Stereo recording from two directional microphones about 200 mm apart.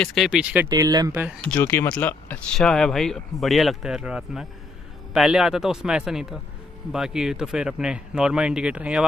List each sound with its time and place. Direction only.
0.0 s speech: centre (ahead or behind)
0.7 s speech: 20° right (ahead or behind)
1.4 s speech: 10° left (ahead or behind)